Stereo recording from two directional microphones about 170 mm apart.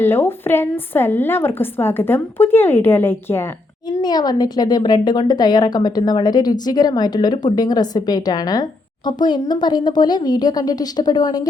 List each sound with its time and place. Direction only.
0.0 s a woman's voice: 15° left (ahead or behind)
3.8 s a woman's voice: 25° left (ahead or behind)